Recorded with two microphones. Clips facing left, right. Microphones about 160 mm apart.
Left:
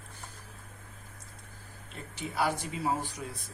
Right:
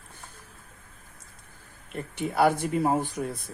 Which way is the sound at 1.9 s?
55° right (ahead or behind).